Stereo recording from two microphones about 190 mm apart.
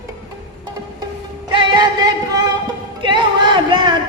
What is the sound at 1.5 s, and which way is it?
Singing, 25° right (ahead or behind).